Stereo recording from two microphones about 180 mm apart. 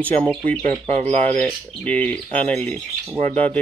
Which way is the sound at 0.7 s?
40° right (ahead or behind).